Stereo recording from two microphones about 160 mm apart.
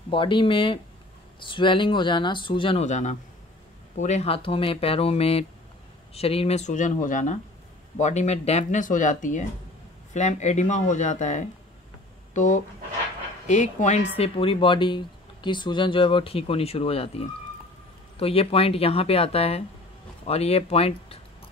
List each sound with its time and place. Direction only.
0.1 s speech: 30° left (ahead or behind)
2.8 s speech: 45° left (ahead or behind)